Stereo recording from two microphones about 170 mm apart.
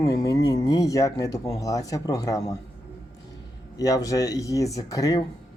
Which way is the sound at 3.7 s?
20° left (ahead or behind).